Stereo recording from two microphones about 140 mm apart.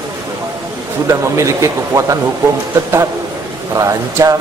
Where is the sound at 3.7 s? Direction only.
25° right (ahead or behind).